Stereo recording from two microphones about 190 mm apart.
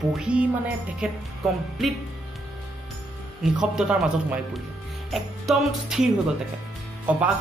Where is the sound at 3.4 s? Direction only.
5° right (ahead or behind).